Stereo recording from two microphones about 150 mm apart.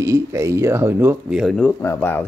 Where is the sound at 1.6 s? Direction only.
15° left (ahead or behind).